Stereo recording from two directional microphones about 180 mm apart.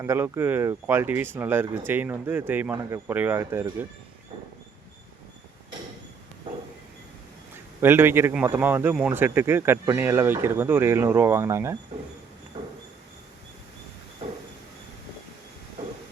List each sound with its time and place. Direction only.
0.0 s a man's voice: 15° right (ahead or behind)
6.5 s a sound: 25° right (ahead or behind)
7.5 s a man's voice: 10° right (ahead or behind)